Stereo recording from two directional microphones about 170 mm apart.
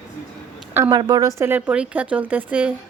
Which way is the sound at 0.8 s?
25° right (ahead or behind).